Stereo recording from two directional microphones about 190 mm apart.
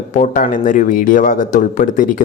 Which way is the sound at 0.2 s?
45° left (ahead or behind).